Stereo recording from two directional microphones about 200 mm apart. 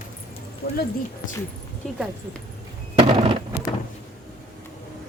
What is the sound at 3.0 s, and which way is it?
Fireworks, 20° right (ahead or behind).